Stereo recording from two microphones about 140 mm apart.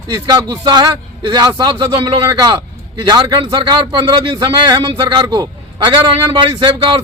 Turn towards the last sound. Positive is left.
turn(degrees=-35)  # may be behind; listen again after turning